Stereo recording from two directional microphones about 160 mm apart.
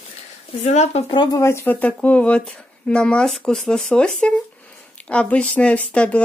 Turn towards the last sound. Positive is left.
turn(degrees=5)  # may be behind; listen again after turning